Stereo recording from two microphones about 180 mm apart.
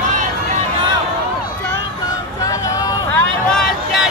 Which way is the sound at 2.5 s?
20° left (ahead or behind).